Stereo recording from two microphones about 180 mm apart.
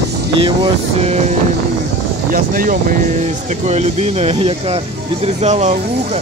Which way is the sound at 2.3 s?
50° right (ahead or behind).